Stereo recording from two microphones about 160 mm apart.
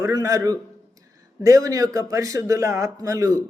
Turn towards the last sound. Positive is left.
turn(degrees=-20)  # may be behind; listen again after turning